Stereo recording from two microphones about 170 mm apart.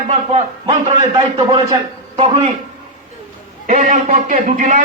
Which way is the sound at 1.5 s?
25° right (ahead or behind).